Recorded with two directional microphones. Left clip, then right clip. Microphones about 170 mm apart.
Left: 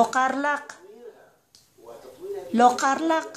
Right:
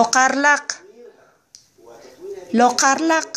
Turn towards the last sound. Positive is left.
turn(degrees=-15)  # may be behind; listen again after turning